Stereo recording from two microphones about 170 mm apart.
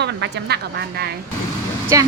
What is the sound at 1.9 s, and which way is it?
Speech, 20° right (ahead or behind).